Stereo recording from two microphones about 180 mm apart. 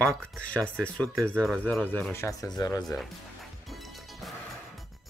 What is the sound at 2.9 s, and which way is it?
Music, centre (ahead or behind).